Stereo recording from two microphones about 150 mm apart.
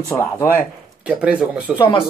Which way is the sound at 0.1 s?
10° left (ahead or behind).